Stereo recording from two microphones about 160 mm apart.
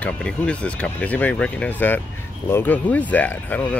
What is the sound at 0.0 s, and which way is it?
Speech, 5° left (ahead or behind).